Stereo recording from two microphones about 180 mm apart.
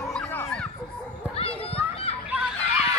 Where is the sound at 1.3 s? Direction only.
30° left (ahead or behind).